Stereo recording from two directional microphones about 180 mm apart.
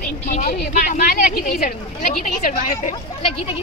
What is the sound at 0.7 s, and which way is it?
Speech, 45° left (ahead or behind).